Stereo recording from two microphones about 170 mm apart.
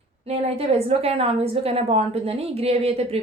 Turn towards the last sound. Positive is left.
turn(degrees=-35)  # may be behind; listen again after turning